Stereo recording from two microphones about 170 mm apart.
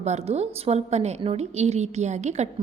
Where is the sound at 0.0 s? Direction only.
40° right (ahead or behind).